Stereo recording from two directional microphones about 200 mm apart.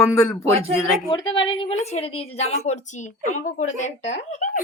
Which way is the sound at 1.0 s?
25° left (ahead or behind).